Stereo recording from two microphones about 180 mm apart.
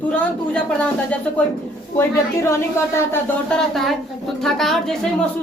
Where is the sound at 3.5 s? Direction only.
Centre (ahead or behind).